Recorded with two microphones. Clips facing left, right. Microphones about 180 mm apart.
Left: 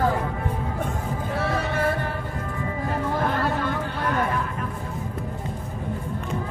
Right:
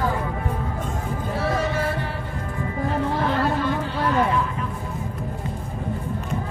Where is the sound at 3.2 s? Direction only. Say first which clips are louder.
Right 2 dB; 50° left (ahead or behind).